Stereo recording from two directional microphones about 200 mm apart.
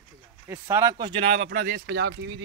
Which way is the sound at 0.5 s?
15° right (ahead or behind).